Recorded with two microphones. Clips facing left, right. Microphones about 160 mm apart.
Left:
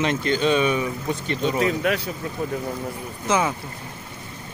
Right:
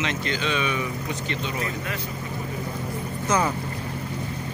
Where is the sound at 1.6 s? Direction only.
85° left.